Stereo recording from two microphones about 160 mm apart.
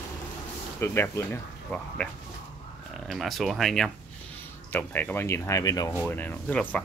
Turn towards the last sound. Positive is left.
turn(degrees=10)  # may be behind; listen again after turning